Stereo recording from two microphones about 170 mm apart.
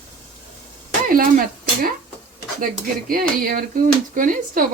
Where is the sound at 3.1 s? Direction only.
55° right (ahead or behind).